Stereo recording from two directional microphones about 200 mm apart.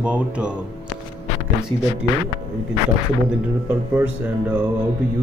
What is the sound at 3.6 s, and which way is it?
Music, 10° right (ahead or behind).